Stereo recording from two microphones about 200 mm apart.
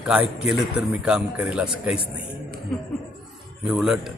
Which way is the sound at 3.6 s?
5° right (ahead or behind).